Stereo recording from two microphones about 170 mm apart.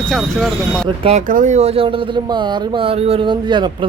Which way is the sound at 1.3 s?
50° right (ahead or behind).